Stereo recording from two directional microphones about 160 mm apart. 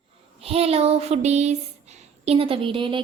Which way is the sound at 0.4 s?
40° right (ahead or behind).